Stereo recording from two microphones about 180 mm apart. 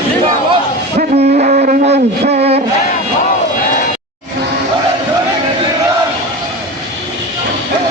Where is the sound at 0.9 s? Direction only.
45° right (ahead or behind).